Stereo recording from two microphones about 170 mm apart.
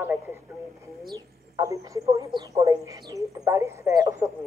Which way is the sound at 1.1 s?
20° right (ahead or behind).